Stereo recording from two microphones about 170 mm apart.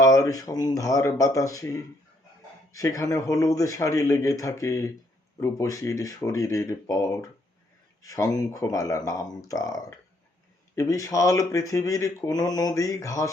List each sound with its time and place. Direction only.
0.0 s speech: 20° left (ahead or behind)
2.7 s speech: 20° left (ahead or behind)